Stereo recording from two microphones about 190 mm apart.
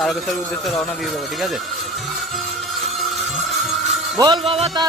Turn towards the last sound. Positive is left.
turn(degrees=-30)  # may be behind; listen again after turning